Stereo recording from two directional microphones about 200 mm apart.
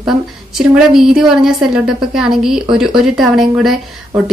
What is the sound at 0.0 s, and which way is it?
A woman's voice, centre (ahead or behind).